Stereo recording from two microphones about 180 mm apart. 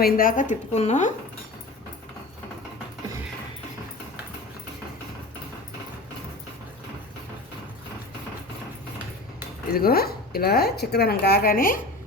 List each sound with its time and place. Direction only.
0.0 s speech: 50° left (ahead or behind)
9.7 s speech: 60° left (ahead or behind)